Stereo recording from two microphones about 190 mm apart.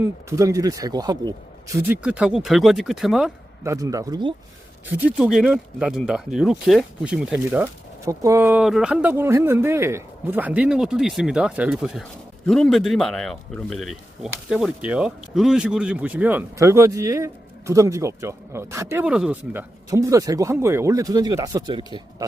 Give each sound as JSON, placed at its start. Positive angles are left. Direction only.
{"t": 0.0, "sound": "speech", "side_deg": -15}
{"t": 2.0, "sound": "speech", "side_deg": -5}
{"t": 3.6, "sound": "speech", "side_deg": -15}
{"t": 4.9, "sound": "speech", "side_deg": -5}